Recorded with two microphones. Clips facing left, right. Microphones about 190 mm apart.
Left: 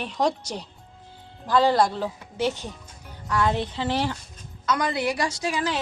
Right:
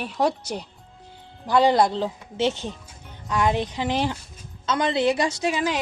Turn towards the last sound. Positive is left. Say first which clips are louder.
# right 3 dB
turn(degrees=-15)  # may be behind; listen again after turning